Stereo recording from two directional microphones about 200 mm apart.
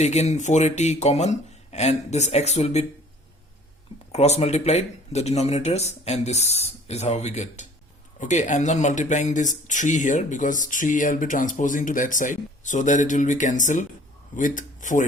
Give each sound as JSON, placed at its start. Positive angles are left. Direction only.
{"t": 0.0, "sound": "speech", "side_deg": 35}
{"t": 4.1, "sound": "speech", "side_deg": 35}